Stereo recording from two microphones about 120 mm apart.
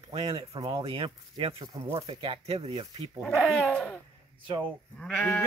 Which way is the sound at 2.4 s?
60° right (ahead or behind).